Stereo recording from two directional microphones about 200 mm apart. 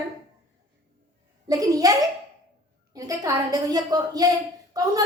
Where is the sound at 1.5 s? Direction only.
20° right (ahead or behind).